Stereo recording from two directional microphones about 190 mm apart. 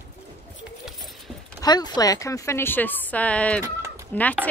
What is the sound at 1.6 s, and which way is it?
A woman's voice, 20° left (ahead or behind).